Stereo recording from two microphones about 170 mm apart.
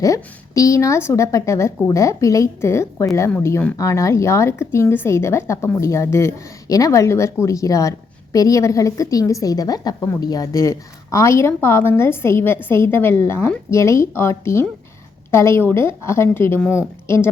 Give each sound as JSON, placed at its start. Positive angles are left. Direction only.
{"t": 0.0, "sound": "a woman's voice", "side_deg": 20}